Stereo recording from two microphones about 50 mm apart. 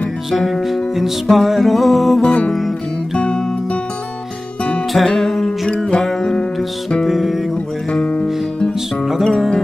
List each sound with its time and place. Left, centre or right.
0.3 s music: centre
2.2 s music: left
4.9 s music: centre
7.9 s music: left
9.0 s music: centre